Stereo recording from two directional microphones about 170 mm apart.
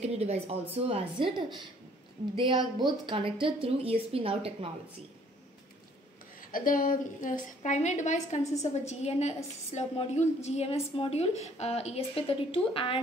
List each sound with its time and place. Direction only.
0.0 s a sound: 40° right (ahead or behind)
0.8 s speech: 35° right (ahead or behind)
6.5 s a woman's voice: 55° left (ahead or behind); by 13.0 s 30° left (ahead or behind)